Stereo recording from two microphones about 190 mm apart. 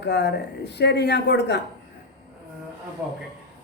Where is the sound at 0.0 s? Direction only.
60° left (ahead or behind).